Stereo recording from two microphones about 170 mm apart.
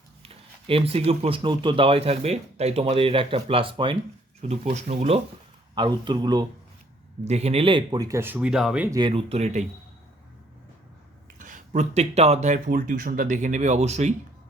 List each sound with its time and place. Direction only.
0.2 s speech: 35° right (ahead or behind)
5.7 s speech: 25° right (ahead or behind)
7.3 s speech: 40° right (ahead or behind); by 8.9 s 5° right (ahead or behind)
8.9 s speech: 25° right (ahead or behind)
11.3 s speech: 50° right (ahead or behind)